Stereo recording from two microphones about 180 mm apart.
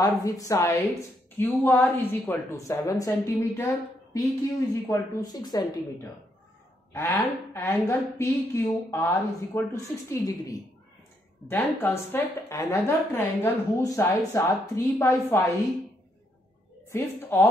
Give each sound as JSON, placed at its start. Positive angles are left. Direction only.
{"t": 0.0, "sound": "a woman's voice", "side_deg": 20}
{"t": 6.9, "sound": "a woman's voice", "side_deg": 15}
{"t": 16.9, "sound": "a woman's voice", "side_deg": 10}